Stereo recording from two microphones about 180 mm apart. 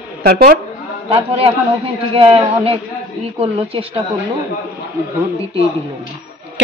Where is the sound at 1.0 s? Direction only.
30° right (ahead or behind).